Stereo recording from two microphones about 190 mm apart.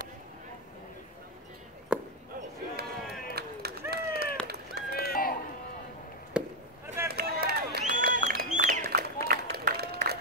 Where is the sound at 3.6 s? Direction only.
55° right (ahead or behind).